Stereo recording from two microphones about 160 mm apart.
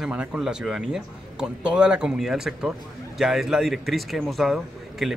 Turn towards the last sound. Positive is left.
turn(degrees=0)  # may be behind; listen again after turning